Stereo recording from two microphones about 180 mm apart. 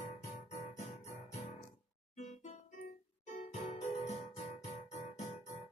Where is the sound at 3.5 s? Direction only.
40° left (ahead or behind).